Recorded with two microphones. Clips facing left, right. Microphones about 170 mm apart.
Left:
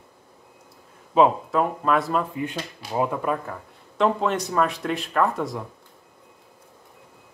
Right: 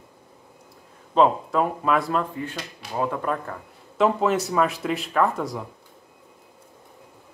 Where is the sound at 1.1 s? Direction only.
5° left (ahead or behind).